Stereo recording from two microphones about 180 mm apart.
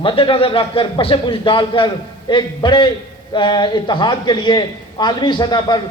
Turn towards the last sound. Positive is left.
turn(degrees=25)  # may be behind; listen again after turning